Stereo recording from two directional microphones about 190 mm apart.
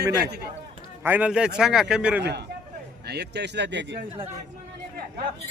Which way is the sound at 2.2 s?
60° right (ahead or behind).